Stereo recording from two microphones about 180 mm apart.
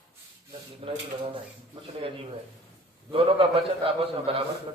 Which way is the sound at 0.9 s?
30° right (ahead or behind).